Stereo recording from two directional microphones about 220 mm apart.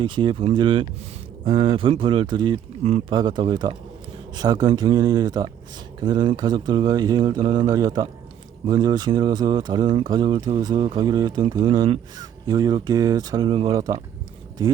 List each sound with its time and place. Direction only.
0.0 s speech: 20° right (ahead or behind)